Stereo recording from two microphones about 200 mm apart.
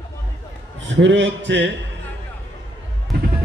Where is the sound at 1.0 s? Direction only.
65° right (ahead or behind).